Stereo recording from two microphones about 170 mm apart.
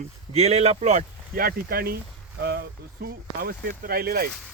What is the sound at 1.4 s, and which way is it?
Speech, 65° right (ahead or behind).